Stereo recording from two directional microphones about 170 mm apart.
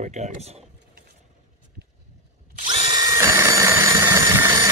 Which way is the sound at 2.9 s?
20° right (ahead or behind).